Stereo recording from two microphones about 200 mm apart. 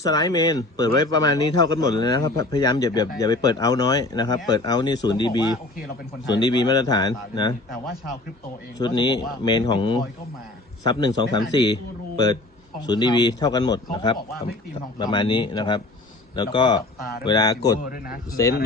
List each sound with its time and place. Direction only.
0.0 s speech: 20° left (ahead or behind)
8.8 s speech: 20° left (ahead or behind)